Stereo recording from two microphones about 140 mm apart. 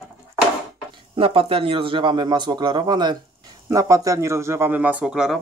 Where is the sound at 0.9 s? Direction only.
40° right (ahead or behind).